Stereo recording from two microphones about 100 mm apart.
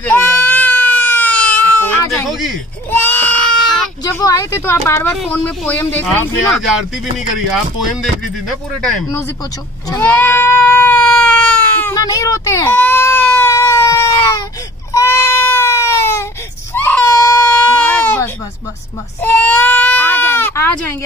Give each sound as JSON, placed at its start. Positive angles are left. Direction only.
{"t": 0.0, "sound": "goat", "side_deg": 20}
{"t": 2.9, "sound": "a sound", "side_deg": 20}
{"t": 4.2, "sound": "speech", "side_deg": 30}
{"t": 8.0, "sound": "speech", "side_deg": 0}
{"t": 10.0, "sound": "baby cry", "side_deg": 15}
{"t": 12.0, "sound": "speech", "side_deg": 35}
{"t": 12.7, "sound": "baby cry", "side_deg": 20}